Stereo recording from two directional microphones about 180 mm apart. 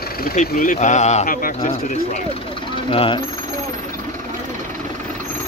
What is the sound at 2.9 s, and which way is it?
Speech, 30° left (ahead or behind).